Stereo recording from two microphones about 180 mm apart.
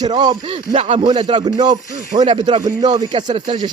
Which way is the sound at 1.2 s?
25° right (ahead or behind).